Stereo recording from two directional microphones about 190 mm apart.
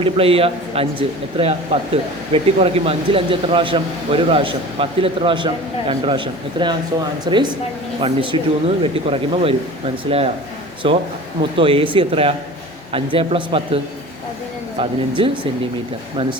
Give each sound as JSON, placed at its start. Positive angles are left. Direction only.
{"t": 0.0, "sound": "a man's voice", "side_deg": -30}
{"t": 14.8, "sound": "speech", "side_deg": -25}